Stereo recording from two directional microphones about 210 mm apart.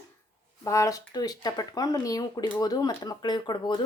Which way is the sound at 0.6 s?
15° left (ahead or behind).